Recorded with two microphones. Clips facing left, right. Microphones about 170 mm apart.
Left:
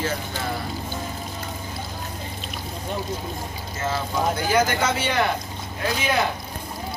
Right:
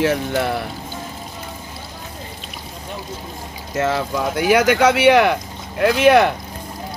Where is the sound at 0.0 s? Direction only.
70° right (ahead or behind).